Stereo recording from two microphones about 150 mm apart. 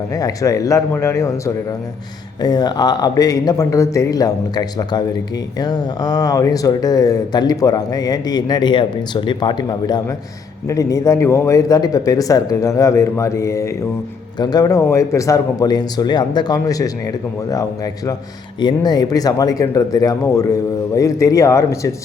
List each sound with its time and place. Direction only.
0.1 s speech: 25° left (ahead or behind)